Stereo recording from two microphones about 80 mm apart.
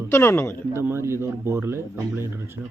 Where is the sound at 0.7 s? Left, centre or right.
Right.